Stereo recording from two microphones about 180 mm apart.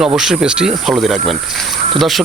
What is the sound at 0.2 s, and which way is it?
Speech, 5° right (ahead or behind).